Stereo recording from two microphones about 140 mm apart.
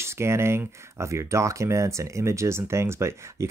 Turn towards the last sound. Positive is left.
turn(degrees=-20)  # may be behind; listen again after turning